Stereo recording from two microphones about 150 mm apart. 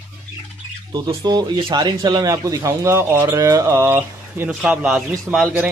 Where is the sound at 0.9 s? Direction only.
25° right (ahead or behind); by 5.4 s 5° right (ahead or behind).